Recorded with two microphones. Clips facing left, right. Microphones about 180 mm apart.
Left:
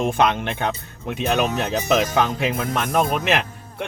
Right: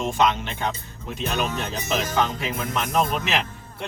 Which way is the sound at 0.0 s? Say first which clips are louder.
Left 3 dB; 55° left (ahead or behind).